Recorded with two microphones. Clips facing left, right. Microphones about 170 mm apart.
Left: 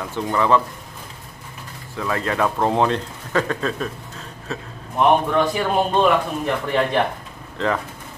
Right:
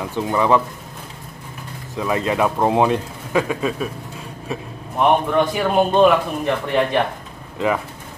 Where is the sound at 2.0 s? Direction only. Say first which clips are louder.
Right 3 dB; 15° right (ahead or behind); by 7.0 s centre (ahead or behind).